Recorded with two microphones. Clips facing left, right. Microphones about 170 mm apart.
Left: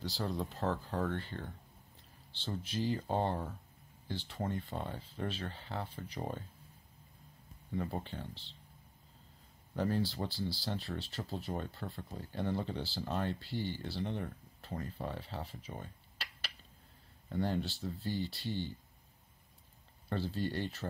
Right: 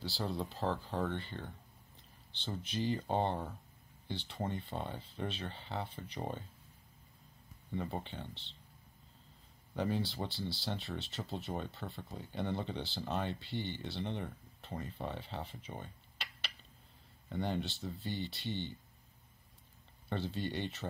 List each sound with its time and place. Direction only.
0.2 s speech: centre (ahead or behind)
2.6 s speech: 5° left (ahead or behind)
7.7 s speech: centre (ahead or behind)
9.8 s speech: centre (ahead or behind)
20.1 s speech: centre (ahead or behind)